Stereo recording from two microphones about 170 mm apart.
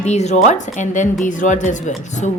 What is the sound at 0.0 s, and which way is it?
Speech, 40° left (ahead or behind).